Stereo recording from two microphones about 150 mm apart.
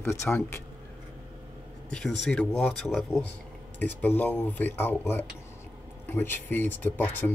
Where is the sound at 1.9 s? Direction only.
5° left (ahead or behind).